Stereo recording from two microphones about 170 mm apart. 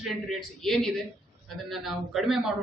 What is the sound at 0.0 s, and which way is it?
A man's voice, centre (ahead or behind).